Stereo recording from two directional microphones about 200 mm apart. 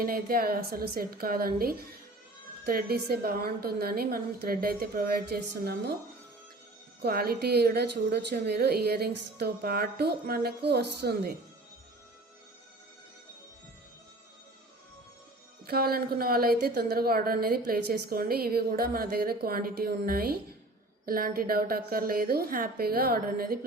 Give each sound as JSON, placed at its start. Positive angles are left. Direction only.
{"t": 0.0, "sound": "a woman's voice", "side_deg": -45}
{"t": 7.0, "sound": "a woman's voice", "side_deg": -50}
{"t": 15.6, "sound": "a woman's voice", "side_deg": -50}